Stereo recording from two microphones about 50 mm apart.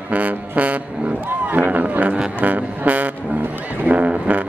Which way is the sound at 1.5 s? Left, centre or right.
Right.